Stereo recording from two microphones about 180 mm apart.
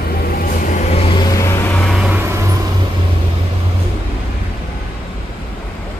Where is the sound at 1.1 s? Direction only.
25° left (ahead or behind).